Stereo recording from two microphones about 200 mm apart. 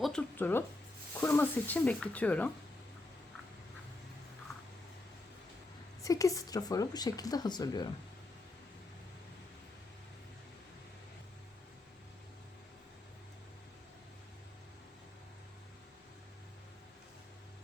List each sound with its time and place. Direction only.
0.0 s a sound: 5° left (ahead or behind)
1.2 s speech: 10° left (ahead or behind)
6.0 s speech: 15° left (ahead or behind)